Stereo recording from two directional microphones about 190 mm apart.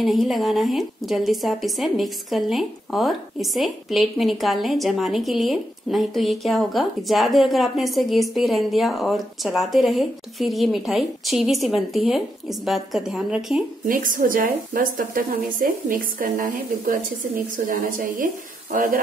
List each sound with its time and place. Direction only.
0.0 s speech: centre (ahead or behind)
13.8 s a woman's voice: 45° right (ahead or behind)